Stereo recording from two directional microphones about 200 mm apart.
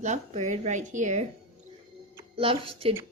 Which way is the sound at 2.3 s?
25° right (ahead or behind).